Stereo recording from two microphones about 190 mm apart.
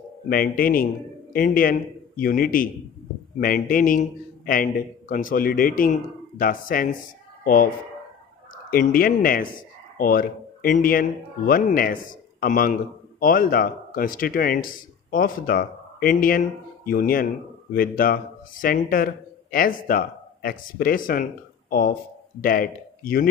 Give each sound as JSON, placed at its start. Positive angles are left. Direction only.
{"t": 0.3, "sound": "a man's voice", "side_deg": 50}